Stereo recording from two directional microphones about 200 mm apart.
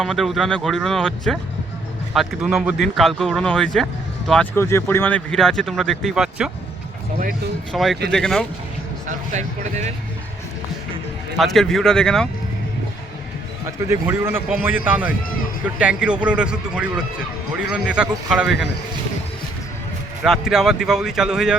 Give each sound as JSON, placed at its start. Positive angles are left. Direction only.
{"t": 0.0, "sound": "speech", "side_deg": 0}
{"t": 7.7, "sound": "speech", "side_deg": 0}
{"t": 9.0, "sound": "speech", "side_deg": -35}
{"t": 11.3, "sound": "speech", "side_deg": 0}
{"t": 13.7, "sound": "a man's voice", "side_deg": -15}
{"t": 20.2, "sound": "speech", "side_deg": 0}